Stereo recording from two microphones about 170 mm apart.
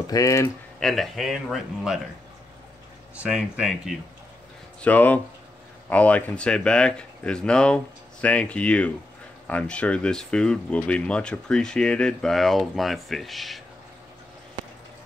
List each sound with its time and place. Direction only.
0.0 s speech: 20° left (ahead or behind)
0.7 s speech: centre (ahead or behind)
3.2 s speech: 5° right (ahead or behind)
4.8 s speech: 10° left (ahead or behind)